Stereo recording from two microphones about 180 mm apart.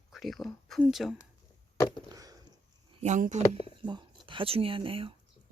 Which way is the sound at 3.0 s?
40° right (ahead or behind).